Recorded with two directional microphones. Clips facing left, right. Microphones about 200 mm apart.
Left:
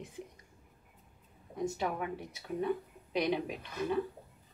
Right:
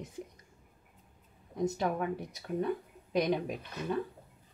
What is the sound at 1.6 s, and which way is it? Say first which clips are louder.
Speech: right 3 dB; 40° right (ahead or behind).